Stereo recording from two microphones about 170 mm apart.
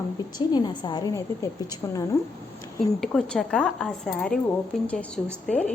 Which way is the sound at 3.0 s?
Centre (ahead or behind).